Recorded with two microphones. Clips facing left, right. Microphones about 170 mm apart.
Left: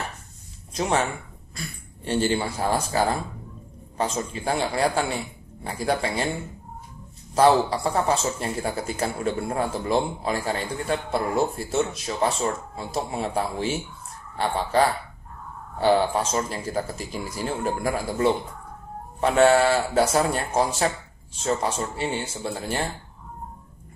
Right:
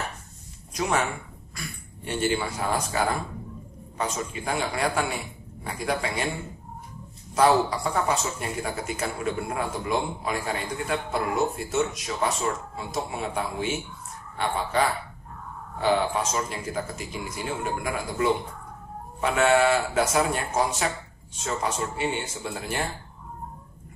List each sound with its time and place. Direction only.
0.7 s a man's voice: 25° left (ahead or behind)
7.3 s a man's voice: 30° left (ahead or behind)